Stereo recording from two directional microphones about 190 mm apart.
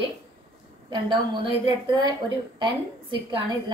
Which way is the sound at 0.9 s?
25° right (ahead or behind).